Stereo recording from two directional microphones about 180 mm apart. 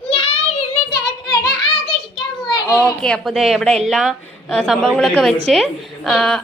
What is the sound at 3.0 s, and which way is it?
A woman's voice, centre (ahead or behind).